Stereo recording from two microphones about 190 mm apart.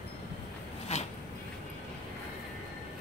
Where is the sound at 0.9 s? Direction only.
35° left (ahead or behind).